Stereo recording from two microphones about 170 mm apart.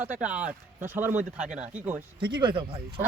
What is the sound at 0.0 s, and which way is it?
Speech, 10° right (ahead or behind).